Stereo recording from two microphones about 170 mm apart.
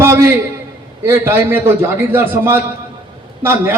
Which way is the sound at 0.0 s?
15° right (ahead or behind).